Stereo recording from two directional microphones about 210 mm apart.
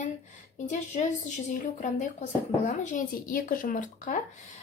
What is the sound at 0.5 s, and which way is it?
A child's voice, 35° left (ahead or behind).